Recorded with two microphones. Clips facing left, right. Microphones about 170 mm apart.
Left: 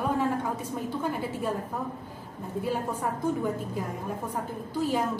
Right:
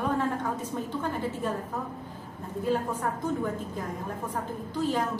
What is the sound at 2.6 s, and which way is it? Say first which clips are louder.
Speech: right 2 dB; 10° left (ahead or behind).